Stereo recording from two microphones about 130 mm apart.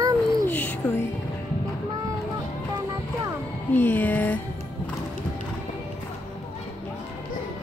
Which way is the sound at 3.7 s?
15° left (ahead or behind).